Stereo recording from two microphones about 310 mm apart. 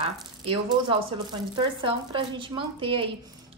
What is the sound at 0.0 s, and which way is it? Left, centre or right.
Speech, centre.